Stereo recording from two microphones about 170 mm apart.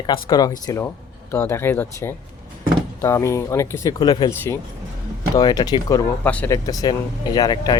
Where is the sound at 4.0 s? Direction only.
30° left (ahead or behind).